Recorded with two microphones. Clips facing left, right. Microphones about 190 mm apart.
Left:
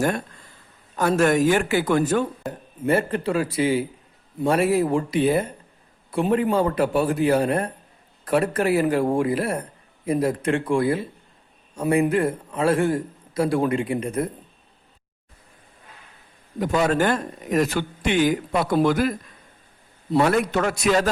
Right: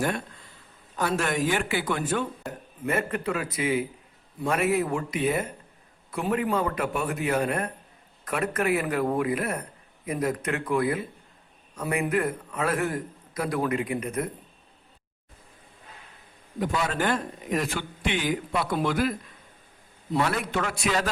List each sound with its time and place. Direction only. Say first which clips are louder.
0.9 s a man's voice: left 8 dB; 45° left (ahead or behind)
16.6 s a man's voice: left 7 dB; 45° left (ahead or behind)
20.1 s a man's voice: left 7 dB; 45° left (ahead or behind)